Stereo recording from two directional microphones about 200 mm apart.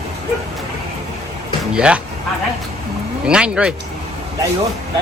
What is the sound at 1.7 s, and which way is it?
Speech, 5° right (ahead or behind).